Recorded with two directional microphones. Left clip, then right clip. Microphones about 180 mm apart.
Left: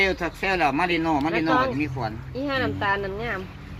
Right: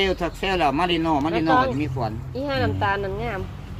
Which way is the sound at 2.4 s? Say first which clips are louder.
Right 1 dB; 50° left (ahead or behind).